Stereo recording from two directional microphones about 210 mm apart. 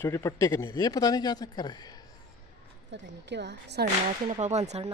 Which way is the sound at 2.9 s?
55° right (ahead or behind).